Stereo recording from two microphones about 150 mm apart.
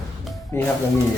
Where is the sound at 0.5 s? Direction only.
15° left (ahead or behind).